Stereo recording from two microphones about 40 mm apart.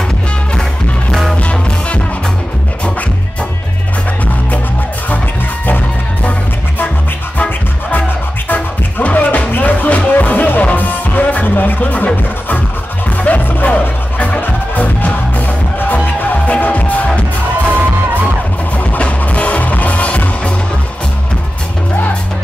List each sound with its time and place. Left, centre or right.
1.3 s music: left
7.3 s music: left
13.3 s music: left
18.8 s music: left